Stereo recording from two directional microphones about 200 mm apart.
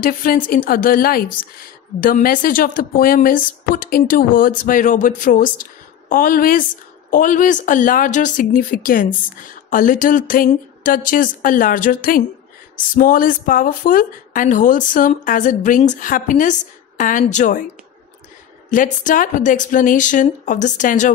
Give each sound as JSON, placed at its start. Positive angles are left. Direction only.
{"t": 0.0, "sound": "a woman's voice", "side_deg": 45}
{"t": 18.7, "sound": "a woman's voice", "side_deg": 40}